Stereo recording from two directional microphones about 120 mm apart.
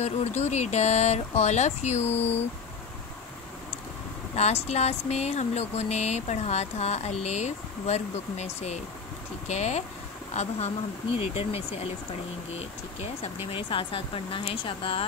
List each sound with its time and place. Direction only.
0.0 s speech: 65° left (ahead or behind)
4.4 s speech: 60° left (ahead or behind)
13.5 s speech: 45° left (ahead or behind)